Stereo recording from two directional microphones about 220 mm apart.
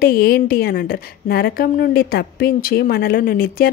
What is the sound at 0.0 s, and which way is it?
Speech, 45° left (ahead or behind).